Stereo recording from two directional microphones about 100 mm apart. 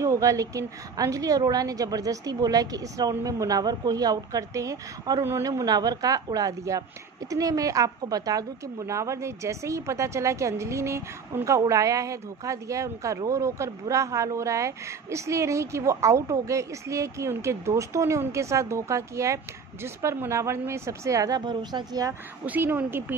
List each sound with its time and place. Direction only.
0.0 s speech: 30° right (ahead or behind)
5.2 s speech: 30° right (ahead or behind)
5.5 s speech: 40° right (ahead or behind)
21.5 s a woman's voice: 50° right (ahead or behind)
22.5 s speech: 15° right (ahead or behind)